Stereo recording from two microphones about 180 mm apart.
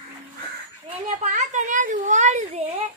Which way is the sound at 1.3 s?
45° right (ahead or behind).